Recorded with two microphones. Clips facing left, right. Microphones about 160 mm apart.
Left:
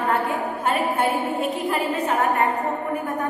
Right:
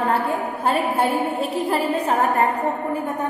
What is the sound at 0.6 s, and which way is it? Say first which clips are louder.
A woman's voice: right 2 dB; 35° right (ahead or behind).